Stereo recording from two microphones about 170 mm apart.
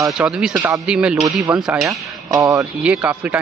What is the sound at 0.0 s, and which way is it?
A man's voice, 5° right (ahead or behind).